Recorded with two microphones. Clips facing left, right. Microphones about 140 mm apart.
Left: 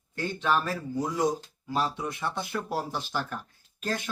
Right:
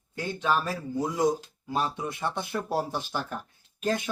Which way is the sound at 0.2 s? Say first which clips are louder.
Even; 15° right (ahead or behind).